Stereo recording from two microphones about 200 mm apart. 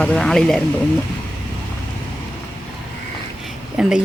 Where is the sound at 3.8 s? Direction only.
5° right (ahead or behind).